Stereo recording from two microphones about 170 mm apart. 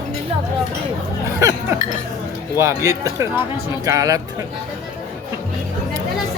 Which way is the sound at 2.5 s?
15° right (ahead or behind).